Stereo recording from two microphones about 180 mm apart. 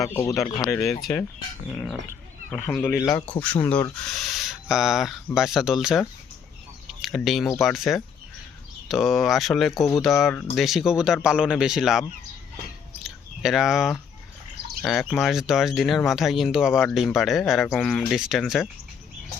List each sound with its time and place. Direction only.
0.0 s speech: 15° left (ahead or behind)
1.7 s speech: centre (ahead or behind)
13.1 s a sound: centre (ahead or behind)
14.8 s speech: centre (ahead or behind)